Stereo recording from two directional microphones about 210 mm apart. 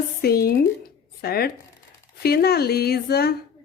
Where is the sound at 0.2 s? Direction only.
45° left (ahead or behind).